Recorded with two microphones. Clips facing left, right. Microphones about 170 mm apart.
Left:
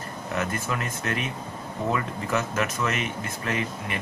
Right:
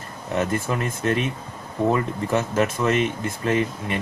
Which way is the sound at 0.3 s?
30° right (ahead or behind).